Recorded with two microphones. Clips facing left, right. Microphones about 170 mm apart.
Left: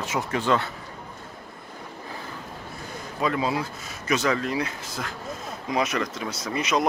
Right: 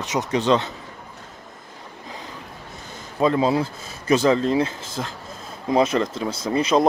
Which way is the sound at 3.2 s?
30° right (ahead or behind).